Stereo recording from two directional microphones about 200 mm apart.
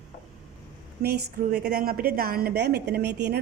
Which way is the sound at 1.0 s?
55° right (ahead or behind).